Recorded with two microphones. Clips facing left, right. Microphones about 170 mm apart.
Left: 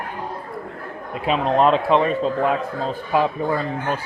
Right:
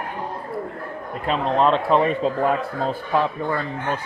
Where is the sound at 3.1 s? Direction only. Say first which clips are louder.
Left 4 dB; 10° left (ahead or behind).